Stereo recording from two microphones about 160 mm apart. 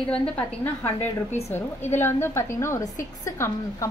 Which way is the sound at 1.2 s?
40° left (ahead or behind).